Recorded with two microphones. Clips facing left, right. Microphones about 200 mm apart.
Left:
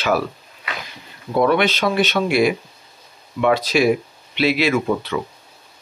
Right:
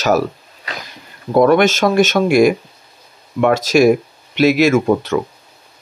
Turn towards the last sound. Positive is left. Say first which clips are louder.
# right 6 dB
turn(degrees=-50)  # may be behind; listen again after turning